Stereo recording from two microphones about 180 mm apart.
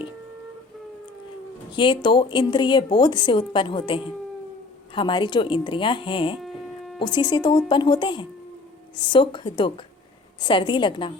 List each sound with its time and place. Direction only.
1.7 s a woman's voice: 25° left (ahead or behind)
6.4 s hum: centre (ahead or behind)
7.0 s a woman's voice: 25° left (ahead or behind)